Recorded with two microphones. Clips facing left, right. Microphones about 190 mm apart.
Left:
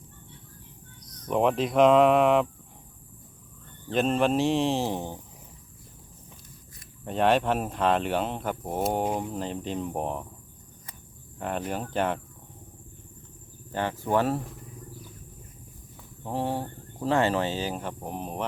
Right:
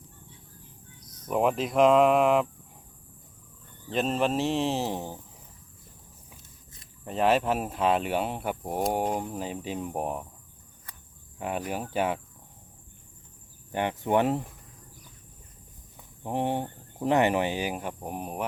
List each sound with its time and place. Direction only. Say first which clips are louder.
1.0 s a sound: left 2 dB; 25° right (ahead or behind)
1.3 s speech: left 2 dB; 5° right (ahead or behind)
3.8 s speech: left 3 dB; centre (ahead or behind)
7.0 s speech: left 1 dB; centre (ahead or behind)
11.3 s speech: left 1 dB; 5° right (ahead or behind)
13.7 s speech: right 1 dB; 20° right (ahead or behind)
16.2 s speech: right 1 dB; 20° right (ahead or behind)